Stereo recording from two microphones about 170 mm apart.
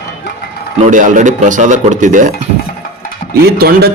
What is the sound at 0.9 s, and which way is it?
Speech, 50° right (ahead or behind).